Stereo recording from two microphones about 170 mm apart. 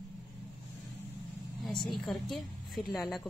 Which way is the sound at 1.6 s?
Centre (ahead or behind).